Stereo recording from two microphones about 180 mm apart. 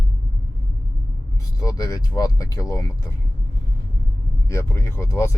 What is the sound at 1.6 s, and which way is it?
Speech, 20° left (ahead or behind).